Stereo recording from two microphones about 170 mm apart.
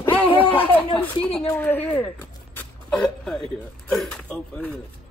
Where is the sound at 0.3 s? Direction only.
30° left (ahead or behind).